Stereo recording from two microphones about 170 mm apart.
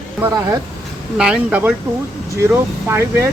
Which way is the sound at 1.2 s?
5° right (ahead or behind).